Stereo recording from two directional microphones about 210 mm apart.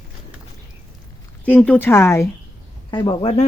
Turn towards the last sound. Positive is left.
turn(degrees=25)  # may be behind; listen again after turning